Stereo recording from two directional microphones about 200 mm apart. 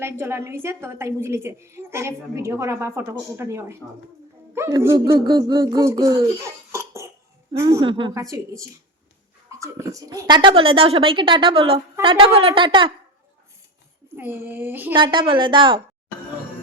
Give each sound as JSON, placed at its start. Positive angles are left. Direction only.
{"t": 0.0, "sound": "a woman's voice", "side_deg": -10}
{"t": 14.2, "sound": "a woman's voice", "side_deg": -10}
{"t": 14.9, "sound": "a woman's voice", "side_deg": -25}